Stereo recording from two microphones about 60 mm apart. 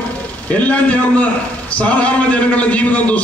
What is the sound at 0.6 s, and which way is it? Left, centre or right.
A man's voice, left.